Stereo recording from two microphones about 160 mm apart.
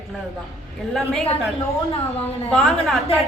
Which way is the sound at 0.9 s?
5° left (ahead or behind).